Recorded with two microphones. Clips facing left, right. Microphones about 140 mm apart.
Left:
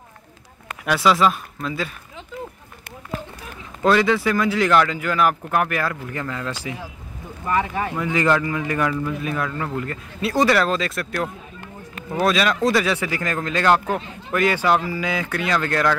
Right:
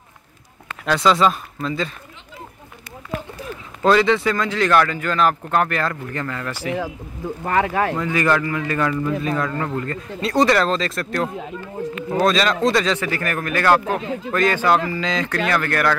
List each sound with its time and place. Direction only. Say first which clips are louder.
0.8 s speech: right 1 dB; 5° left (ahead or behind)
3.8 s speech: right 2 dB; centre (ahead or behind)
7.4 s speech: right 3 dB; 70° right (ahead or behind)
7.9 s speech: even; 15° left (ahead or behind)